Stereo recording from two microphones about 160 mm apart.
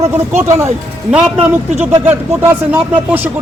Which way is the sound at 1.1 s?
5° right (ahead or behind).